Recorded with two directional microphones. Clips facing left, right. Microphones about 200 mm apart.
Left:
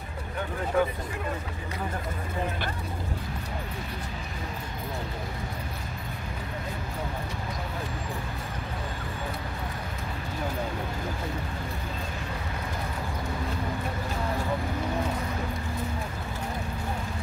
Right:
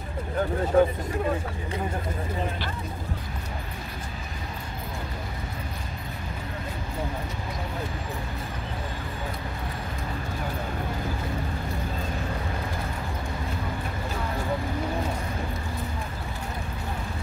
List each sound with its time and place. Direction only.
0.7 s speech: 40° right (ahead or behind)